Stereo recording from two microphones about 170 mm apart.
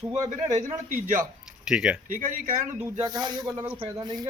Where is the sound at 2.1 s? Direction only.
50° right (ahead or behind).